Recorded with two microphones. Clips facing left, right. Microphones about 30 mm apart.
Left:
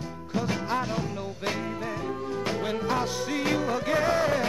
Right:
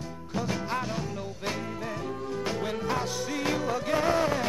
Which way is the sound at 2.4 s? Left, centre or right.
Centre.